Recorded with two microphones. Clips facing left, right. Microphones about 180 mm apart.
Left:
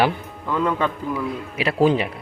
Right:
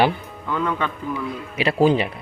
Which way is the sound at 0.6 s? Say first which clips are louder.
Left 4 dB; 30° left (ahead or behind).